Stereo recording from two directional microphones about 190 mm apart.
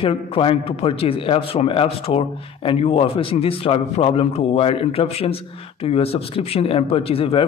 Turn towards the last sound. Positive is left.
turn(degrees=30)  # may be behind; listen again after turning